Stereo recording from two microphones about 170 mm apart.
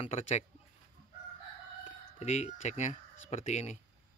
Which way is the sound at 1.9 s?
40° left (ahead or behind).